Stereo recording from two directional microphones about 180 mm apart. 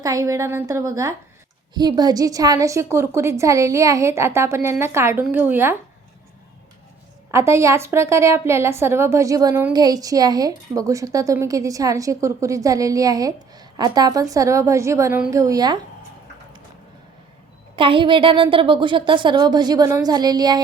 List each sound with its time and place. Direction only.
0.0 s a woman's voice: 20° right (ahead or behind)
7.3 s a woman's voice: 15° right (ahead or behind)
17.7 s a woman's voice: 30° right (ahead or behind)